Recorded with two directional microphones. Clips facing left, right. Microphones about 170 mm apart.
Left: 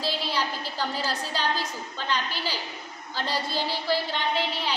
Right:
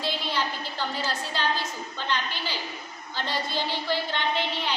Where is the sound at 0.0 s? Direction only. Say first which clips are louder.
Left 1 dB; 35° left (ahead or behind).